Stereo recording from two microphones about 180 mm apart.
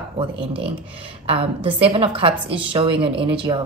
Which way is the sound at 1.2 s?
30° right (ahead or behind).